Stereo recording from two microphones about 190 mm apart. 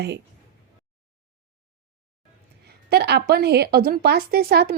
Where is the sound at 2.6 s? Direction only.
55° right (ahead or behind).